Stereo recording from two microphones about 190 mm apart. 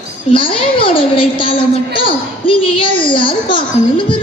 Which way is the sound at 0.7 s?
25° left (ahead or behind).